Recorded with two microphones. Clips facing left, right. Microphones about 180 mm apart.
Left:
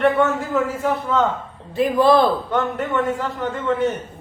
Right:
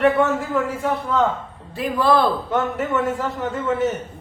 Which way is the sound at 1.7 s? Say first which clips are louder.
Left 4 dB; 15° left (ahead or behind).